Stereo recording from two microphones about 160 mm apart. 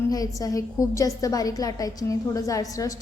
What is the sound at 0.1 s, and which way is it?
A woman's voice, 25° left (ahead or behind).